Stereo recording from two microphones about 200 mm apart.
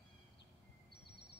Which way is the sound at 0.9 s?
55° left (ahead or behind).